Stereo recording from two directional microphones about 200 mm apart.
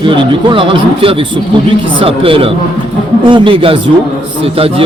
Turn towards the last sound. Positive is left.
turn(degrees=-25)  # may be behind; listen again after turning